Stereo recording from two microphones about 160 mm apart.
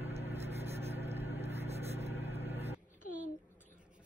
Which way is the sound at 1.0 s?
40° right (ahead or behind).